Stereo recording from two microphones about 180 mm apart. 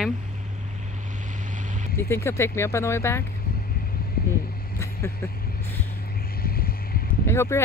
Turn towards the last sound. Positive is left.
turn(degrees=15)  # may be behind; listen again after turning